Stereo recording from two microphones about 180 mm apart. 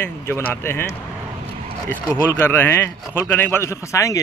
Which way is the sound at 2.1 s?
10° left (ahead or behind).